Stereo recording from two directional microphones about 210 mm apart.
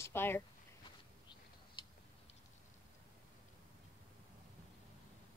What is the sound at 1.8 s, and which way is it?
Tick-tock, 20° left (ahead or behind).